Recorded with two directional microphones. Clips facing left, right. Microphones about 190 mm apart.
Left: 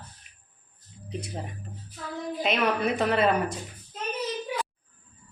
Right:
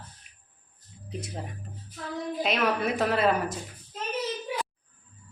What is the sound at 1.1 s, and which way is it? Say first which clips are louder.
Speech: left 1 dB; centre (ahead or behind).